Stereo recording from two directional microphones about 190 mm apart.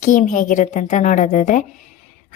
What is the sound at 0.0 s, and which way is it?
A woman's voice, 40° left (ahead or behind).